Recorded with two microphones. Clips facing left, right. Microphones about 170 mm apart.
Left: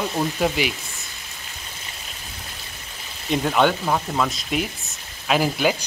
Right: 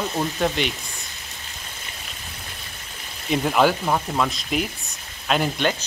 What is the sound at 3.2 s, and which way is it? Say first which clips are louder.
Speech: even; centre (ahead or behind).